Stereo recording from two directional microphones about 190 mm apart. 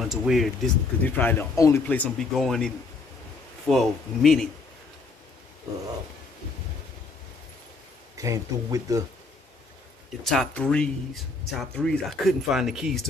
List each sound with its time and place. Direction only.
0.0 s speech: centre (ahead or behind)
1.0 s speech: 10° left (ahead or behind)
8.2 s speech: 15° right (ahead or behind)
10.2 s speech: centre (ahead or behind)